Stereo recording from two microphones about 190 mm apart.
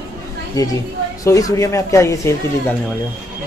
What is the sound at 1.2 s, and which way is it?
Speech, 15° left (ahead or behind).